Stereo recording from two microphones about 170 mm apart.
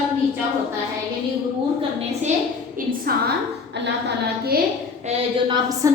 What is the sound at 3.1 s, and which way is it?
Speech, 60° right (ahead or behind).